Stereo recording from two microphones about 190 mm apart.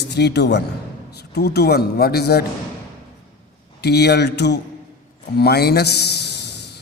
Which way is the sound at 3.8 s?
60° left (ahead or behind).